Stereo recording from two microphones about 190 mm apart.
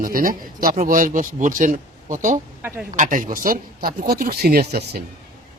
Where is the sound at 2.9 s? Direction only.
45° right (ahead or behind).